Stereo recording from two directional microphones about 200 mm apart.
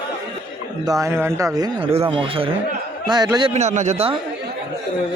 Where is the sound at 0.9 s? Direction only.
15° right (ahead or behind).